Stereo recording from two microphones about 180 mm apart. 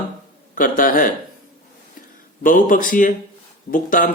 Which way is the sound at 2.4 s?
50° left (ahead or behind).